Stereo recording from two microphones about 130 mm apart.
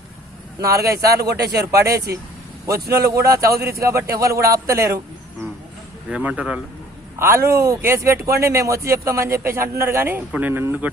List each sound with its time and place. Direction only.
0.6 s speech: 25° right (ahead or behind)
6.1 s speech: 10° right (ahead or behind)
7.2 s speech: 20° right (ahead or behind)